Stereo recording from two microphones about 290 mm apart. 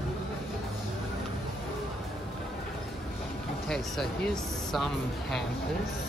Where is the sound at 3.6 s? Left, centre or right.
Centre.